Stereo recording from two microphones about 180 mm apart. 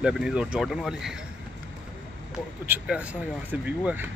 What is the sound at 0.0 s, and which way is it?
Speech, 5° right (ahead or behind).